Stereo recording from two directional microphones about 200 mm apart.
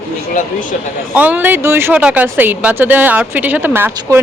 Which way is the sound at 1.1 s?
10° right (ahead or behind).